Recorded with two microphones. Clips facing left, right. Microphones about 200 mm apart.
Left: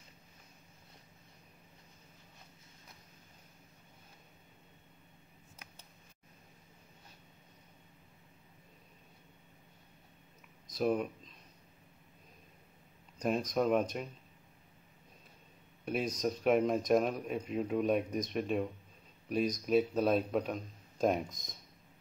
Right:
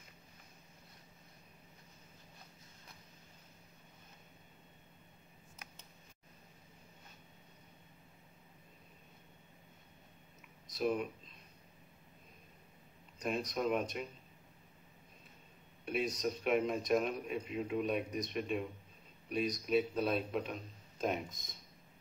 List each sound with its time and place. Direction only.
10.8 s a man's voice: 40° left (ahead or behind)
13.2 s speech: 45° left (ahead or behind)
15.8 s a man's voice: 40° left (ahead or behind)